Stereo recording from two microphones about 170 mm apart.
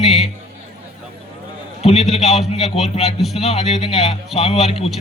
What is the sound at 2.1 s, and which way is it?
A man's voice, 40° left (ahead or behind).